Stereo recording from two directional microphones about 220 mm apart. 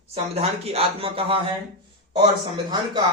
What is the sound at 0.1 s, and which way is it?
Speech, 25° right (ahead or behind).